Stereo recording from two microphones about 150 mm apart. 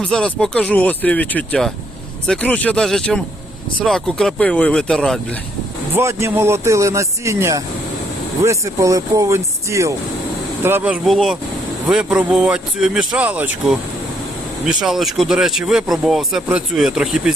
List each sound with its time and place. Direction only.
0.0 s speech: 5° left (ahead or behind)
6.0 s speech: 20° right (ahead or behind); by 17.3 s 5° right (ahead or behind)